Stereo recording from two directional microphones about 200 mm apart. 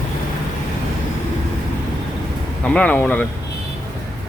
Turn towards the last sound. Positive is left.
turn(degrees=10)  # may be behind; listen again after turning